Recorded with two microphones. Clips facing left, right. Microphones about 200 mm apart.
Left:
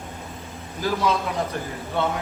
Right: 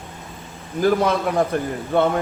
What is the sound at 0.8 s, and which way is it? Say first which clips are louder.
A man's voice: right 6 dB; 55° right (ahead or behind).